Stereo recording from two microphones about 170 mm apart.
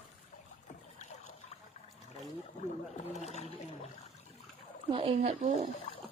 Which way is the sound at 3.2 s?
40° left (ahead or behind).